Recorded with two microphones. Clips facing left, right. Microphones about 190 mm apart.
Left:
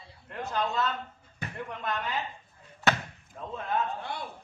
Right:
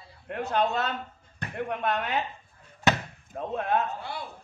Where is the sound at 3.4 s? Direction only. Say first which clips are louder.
Right 4 dB; 65° right (ahead or behind).